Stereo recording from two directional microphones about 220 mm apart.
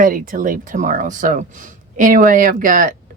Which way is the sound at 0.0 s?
40° right (ahead or behind).